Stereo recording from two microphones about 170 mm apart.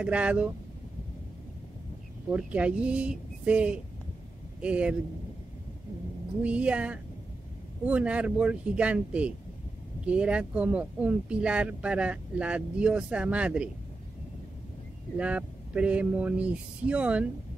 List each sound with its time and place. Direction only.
0.0 s speech: 10° right (ahead or behind)
2.3 s speech: 5° right (ahead or behind)
6.4 s speech: 5° right (ahead or behind)
15.1 s speech: 5° right (ahead or behind)